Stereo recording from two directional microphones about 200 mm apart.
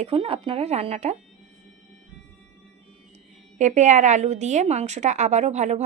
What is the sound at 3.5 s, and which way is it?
Speech, 35° right (ahead or behind).